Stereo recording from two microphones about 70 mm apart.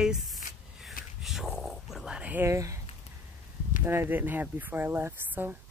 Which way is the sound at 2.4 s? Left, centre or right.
Right.